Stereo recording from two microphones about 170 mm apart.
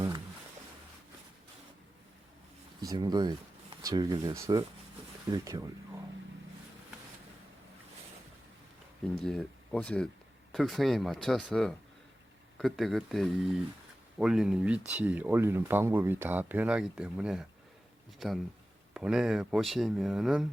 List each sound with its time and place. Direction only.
2.8 s speech: 25° right (ahead or behind)
9.2 s speech: 5° left (ahead or behind)